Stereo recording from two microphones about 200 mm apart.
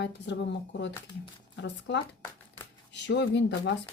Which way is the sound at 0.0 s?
60° left (ahead or behind).